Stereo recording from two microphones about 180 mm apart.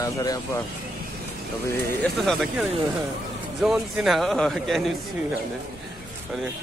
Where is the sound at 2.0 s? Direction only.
Centre (ahead or behind).